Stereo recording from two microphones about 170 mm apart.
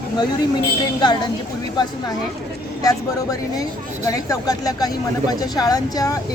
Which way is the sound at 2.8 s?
20° left (ahead or behind).